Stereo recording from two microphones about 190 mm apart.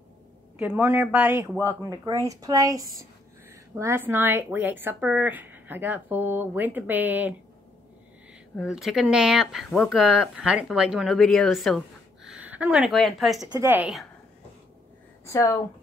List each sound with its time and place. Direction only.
0.6 s speech: 10° right (ahead or behind)
8.5 s speech: 5° right (ahead or behind)
13.5 s speech: 15° right (ahead or behind)
15.2 s speech: 15° left (ahead or behind)